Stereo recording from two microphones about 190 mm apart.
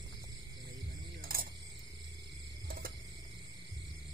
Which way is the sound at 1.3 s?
50° right (ahead or behind).